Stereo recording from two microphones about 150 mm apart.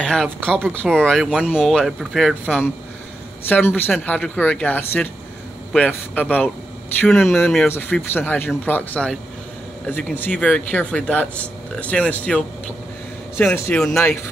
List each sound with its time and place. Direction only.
0.0 s speech: 5° left (ahead or behind)
13.7 s speech: 5° left (ahead or behind)